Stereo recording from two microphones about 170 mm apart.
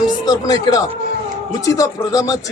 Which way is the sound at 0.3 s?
25° left (ahead or behind).